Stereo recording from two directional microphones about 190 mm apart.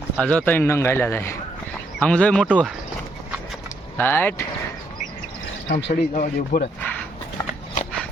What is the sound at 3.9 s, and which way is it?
Speech, 10° left (ahead or behind).